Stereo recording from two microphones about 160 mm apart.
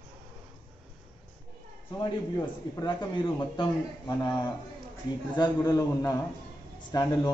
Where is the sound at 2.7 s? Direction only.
25° left (ahead or behind).